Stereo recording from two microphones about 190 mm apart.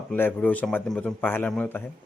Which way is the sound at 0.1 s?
10° left (ahead or behind).